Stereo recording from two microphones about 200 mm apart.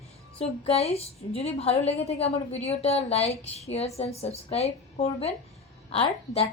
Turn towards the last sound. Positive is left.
turn(degrees=30)  # may be behind; listen again after turning